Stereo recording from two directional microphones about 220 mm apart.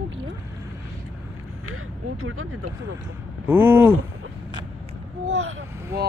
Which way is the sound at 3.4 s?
10° right (ahead or behind).